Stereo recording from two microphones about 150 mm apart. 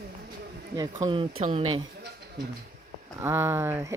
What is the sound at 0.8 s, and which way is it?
Speech, 30° right (ahead or behind).